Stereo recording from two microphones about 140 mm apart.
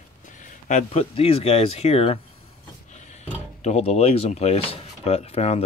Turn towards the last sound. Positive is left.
turn(degrees=50)  # may be behind; listen again after turning